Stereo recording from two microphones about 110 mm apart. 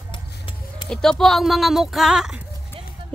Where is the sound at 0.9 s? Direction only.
5° left (ahead or behind).